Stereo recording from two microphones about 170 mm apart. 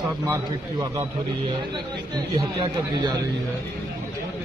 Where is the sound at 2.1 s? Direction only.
25° right (ahead or behind).